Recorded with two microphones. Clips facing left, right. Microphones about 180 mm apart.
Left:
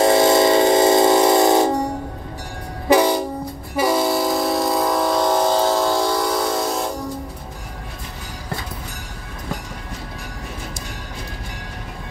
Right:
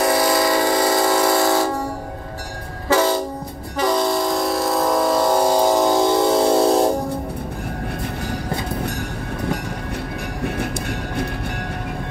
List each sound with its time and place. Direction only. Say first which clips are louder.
0.0 s music: left 4 dB; 25° left (ahead or behind)
2.9 s train: left 2 dB; 15° left (ahead or behind); by 6.9 s 30° right (ahead or behind)